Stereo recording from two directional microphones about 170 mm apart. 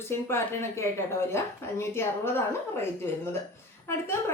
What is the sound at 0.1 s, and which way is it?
A woman's voice, 15° left (ahead or behind).